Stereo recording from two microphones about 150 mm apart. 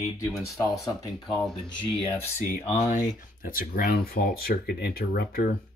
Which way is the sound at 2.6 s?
55° left (ahead or behind).